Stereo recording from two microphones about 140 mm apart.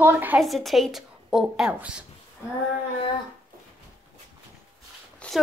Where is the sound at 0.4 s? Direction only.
Centre (ahead or behind).